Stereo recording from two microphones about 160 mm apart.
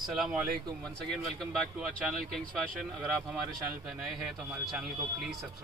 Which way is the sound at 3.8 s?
5° right (ahead or behind).